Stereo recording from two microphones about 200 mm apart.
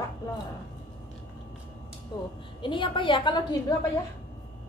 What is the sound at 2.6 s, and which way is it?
Speech, 25° left (ahead or behind).